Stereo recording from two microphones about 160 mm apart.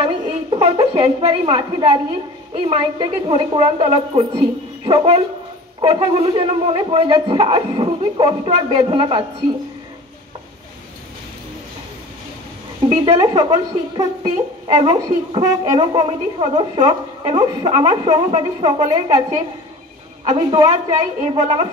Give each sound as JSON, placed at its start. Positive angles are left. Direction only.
{"t": 0.0, "sound": "a woman's voice", "side_deg": -35}
{"t": 12.9, "sound": "a woman's voice", "side_deg": -30}
{"t": 20.3, "sound": "a woman's voice", "side_deg": -25}